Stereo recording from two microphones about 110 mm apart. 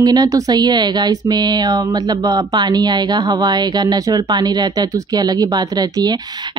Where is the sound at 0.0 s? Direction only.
35° right (ahead or behind).